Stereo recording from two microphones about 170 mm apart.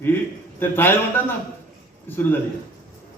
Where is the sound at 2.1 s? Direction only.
10° left (ahead or behind).